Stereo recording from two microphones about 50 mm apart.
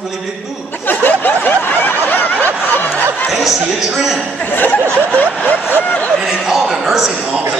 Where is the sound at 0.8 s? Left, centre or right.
Left.